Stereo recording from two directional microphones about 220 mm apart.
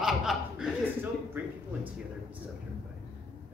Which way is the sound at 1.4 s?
10° right (ahead or behind).